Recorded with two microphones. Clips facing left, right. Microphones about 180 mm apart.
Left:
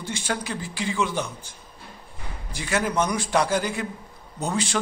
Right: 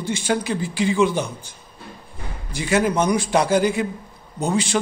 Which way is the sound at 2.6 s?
15° right (ahead or behind).